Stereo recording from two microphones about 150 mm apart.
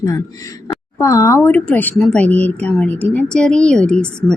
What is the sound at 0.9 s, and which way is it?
A woman's voice, 20° left (ahead or behind).